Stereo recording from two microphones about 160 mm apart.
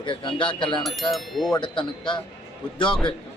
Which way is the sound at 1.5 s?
30° left (ahead or behind).